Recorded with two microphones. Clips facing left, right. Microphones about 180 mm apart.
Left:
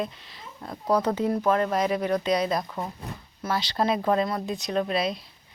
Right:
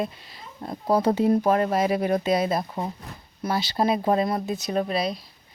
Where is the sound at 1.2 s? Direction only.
10° right (ahead or behind).